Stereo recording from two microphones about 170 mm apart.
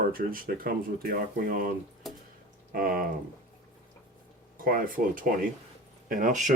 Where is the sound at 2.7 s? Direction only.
55° right (ahead or behind).